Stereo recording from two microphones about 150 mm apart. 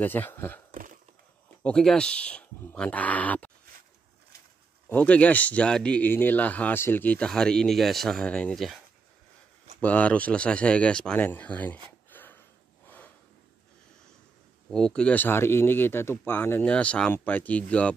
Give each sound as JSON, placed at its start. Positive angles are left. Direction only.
{"t": 0.0, "sound": "speech", "side_deg": 15}
{"t": 0.7, "sound": "a sound", "side_deg": -60}
{"t": 1.6, "sound": "speech", "side_deg": 5}
{"t": 4.8, "sound": "speech", "side_deg": 10}
{"t": 9.8, "sound": "speech", "side_deg": 10}
{"t": 12.8, "sound": "snort", "side_deg": 10}
{"t": 14.7, "sound": "speech", "side_deg": 5}